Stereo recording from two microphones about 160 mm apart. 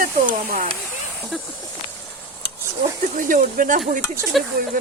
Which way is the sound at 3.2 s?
55° right (ahead or behind).